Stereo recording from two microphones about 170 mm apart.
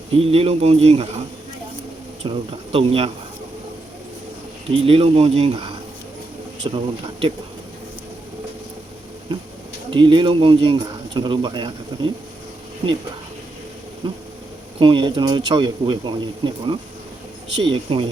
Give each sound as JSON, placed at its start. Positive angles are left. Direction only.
{"t": 0.2, "sound": "speech", "side_deg": -35}
{"t": 2.2, "sound": "speech", "side_deg": -35}
{"t": 4.7, "sound": "speech", "side_deg": -35}
{"t": 9.9, "sound": "speech", "side_deg": -30}
{"t": 14.0, "sound": "speech", "side_deg": -30}